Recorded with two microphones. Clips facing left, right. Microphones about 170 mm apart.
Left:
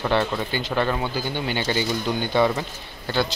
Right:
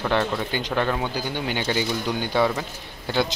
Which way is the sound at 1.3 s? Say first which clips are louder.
Left 1 dB; 15° right (ahead or behind).